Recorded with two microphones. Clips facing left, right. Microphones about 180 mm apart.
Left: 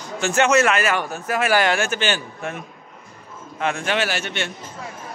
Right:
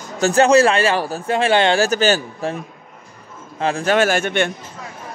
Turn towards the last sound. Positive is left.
turn(degrees=-50)  # may be behind; listen again after turning